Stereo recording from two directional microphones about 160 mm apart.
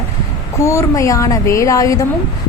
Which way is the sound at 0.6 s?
20° left (ahead or behind).